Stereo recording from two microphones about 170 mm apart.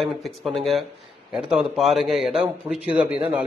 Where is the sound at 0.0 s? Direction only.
Centre (ahead or behind).